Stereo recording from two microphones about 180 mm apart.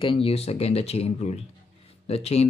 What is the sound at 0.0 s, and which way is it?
Speech, 30° left (ahead or behind).